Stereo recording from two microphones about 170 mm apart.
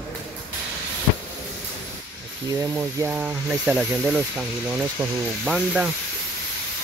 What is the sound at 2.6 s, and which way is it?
Speech, 15° right (ahead or behind).